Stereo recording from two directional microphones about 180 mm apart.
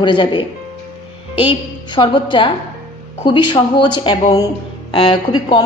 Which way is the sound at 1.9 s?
25° left (ahead or behind).